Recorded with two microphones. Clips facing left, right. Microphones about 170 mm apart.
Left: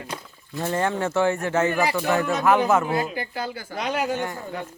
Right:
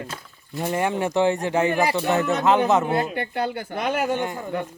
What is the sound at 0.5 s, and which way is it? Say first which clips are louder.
A man's voice: right 1 dB; 15° right (ahead or behind).